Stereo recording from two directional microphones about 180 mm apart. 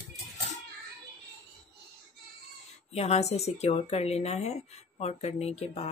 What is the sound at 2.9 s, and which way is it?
Speech, 35° left (ahead or behind).